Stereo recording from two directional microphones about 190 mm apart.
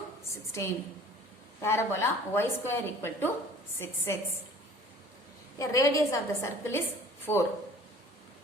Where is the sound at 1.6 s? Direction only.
15° left (ahead or behind).